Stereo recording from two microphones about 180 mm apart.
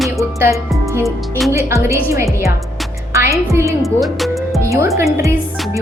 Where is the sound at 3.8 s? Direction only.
Centre (ahead or behind).